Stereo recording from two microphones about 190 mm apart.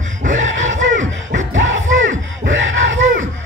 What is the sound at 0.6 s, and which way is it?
Music, 40° right (ahead or behind).